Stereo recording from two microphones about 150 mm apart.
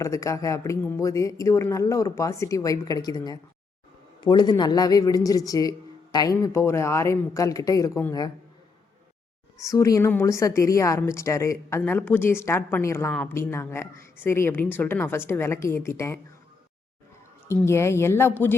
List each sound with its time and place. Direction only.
0.0 s speech: 20° left (ahead or behind)
9.6 s a woman's voice: 20° left (ahead or behind)
17.6 s a woman's voice: 15° left (ahead or behind)